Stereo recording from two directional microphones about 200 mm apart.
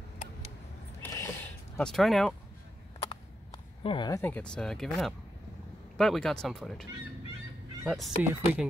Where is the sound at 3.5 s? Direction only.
25° left (ahead or behind).